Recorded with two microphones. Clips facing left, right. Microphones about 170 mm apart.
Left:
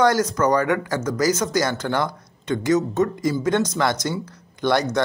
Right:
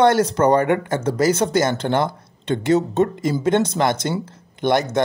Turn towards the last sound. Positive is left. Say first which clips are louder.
# right 2 dB
turn(degrees=-20)  # may be behind; listen again after turning